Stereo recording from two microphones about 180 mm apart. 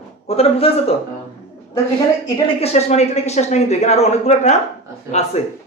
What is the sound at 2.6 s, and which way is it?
Speech, 35° left (ahead or behind).